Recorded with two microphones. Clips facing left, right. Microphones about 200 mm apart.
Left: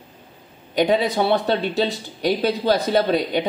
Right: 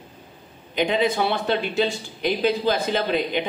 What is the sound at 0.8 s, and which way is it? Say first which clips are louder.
Speech: left 2 dB; 35° left (ahead or behind).